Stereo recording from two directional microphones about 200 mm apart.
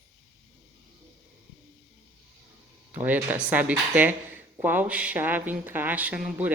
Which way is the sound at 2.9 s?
10° right (ahead or behind).